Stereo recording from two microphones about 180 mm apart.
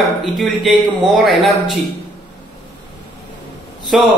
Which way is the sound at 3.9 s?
Centre (ahead or behind).